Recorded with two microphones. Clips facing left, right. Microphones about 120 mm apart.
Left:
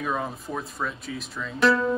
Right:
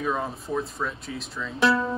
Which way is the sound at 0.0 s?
Centre (ahead or behind).